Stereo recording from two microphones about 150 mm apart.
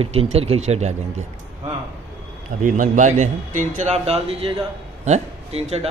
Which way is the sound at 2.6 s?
60° right (ahead or behind).